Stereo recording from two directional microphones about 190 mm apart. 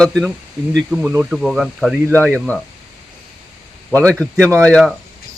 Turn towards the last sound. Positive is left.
turn(degrees=5)  # may be behind; listen again after turning